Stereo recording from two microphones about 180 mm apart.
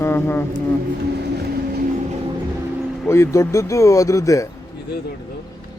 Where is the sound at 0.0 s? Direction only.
15° left (ahead or behind).